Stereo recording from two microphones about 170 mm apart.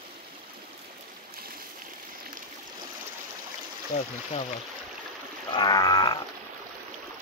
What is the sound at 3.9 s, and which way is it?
Speech, 50° left (ahead or behind).